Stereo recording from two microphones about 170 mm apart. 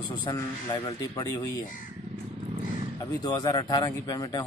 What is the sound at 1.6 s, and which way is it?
Speech, 50° left (ahead or behind).